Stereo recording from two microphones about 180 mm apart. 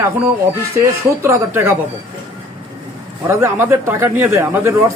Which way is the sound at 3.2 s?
15° right (ahead or behind).